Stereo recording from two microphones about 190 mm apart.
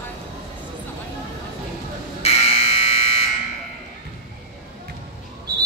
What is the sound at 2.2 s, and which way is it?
Fire alarm, 35° left (ahead or behind).